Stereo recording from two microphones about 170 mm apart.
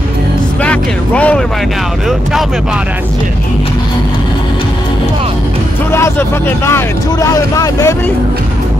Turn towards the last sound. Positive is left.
turn(degrees=20)  # may be behind; listen again after turning